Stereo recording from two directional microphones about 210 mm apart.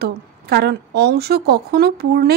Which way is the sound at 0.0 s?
50° right (ahead or behind).